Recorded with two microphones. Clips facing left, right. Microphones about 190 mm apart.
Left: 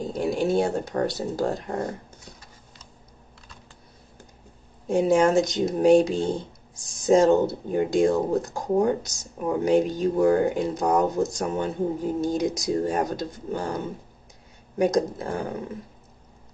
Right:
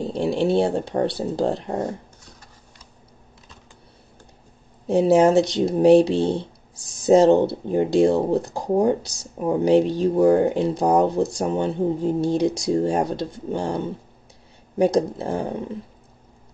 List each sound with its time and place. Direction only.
0.0 s speech: 30° right (ahead or behind)
4.8 s speech: 30° right (ahead or behind)